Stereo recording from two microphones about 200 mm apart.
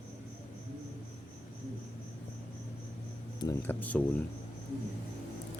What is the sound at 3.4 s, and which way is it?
Speech, 15° left (ahead or behind).